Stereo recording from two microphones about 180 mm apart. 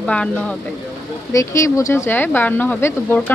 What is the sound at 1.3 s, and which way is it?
Speech, 15° left (ahead or behind).